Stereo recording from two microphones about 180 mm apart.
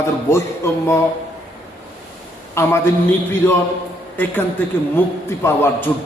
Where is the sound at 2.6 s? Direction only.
15° left (ahead or behind).